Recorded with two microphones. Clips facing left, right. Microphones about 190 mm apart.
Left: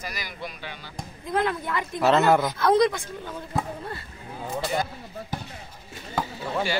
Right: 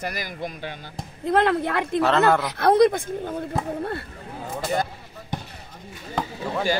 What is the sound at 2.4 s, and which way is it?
Speech, 65° right (ahead or behind).